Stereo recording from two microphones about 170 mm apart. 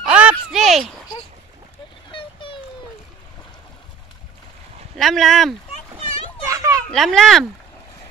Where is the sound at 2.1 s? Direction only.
30° left (ahead or behind).